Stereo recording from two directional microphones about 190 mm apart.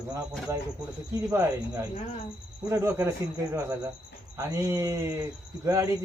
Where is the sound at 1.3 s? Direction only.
15° right (ahead or behind).